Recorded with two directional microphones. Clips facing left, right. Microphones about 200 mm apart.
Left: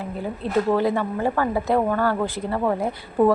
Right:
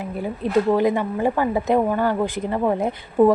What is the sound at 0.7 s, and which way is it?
Speech, 15° right (ahead or behind).